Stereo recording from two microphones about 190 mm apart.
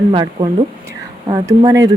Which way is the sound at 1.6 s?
20° right (ahead or behind).